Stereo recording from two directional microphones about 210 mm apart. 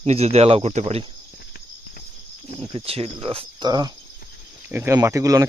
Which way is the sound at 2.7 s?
25° right (ahead or behind).